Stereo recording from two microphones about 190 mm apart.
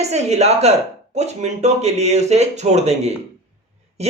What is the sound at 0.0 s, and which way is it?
Speech, 35° right (ahead or behind).